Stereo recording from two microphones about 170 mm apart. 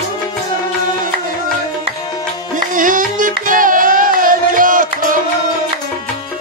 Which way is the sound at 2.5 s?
50° right (ahead or behind).